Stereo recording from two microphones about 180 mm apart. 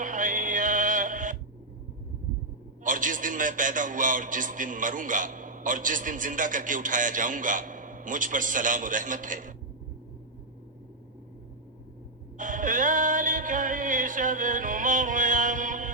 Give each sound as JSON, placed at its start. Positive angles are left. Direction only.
{"t": 0.0, "sound": "a sound", "side_deg": -45}
{"t": 2.8, "sound": "a man's voice", "side_deg": -45}
{"t": 12.4, "sound": "music", "side_deg": -45}